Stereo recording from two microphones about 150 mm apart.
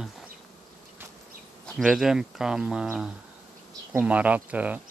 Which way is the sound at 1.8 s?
Centre (ahead or behind).